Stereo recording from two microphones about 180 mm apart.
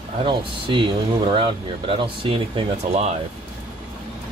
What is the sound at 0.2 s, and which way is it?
Speech, 30° right (ahead or behind).